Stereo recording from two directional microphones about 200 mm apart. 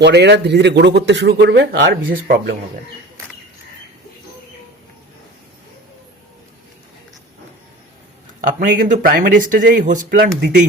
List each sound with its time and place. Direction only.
0.0 s speech: 60° right (ahead or behind)
8.4 s speech: 40° right (ahead or behind)
10.1 s speech: 55° right (ahead or behind)